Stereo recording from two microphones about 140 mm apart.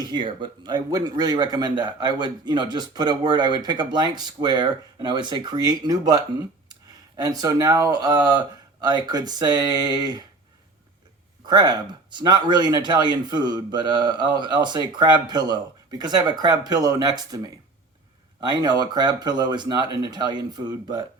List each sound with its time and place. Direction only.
0.0 s speech: 35° right (ahead or behind)
11.4 s speech: 30° right (ahead or behind)